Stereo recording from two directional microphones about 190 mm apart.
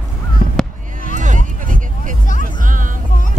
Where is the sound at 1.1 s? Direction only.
40° right (ahead or behind).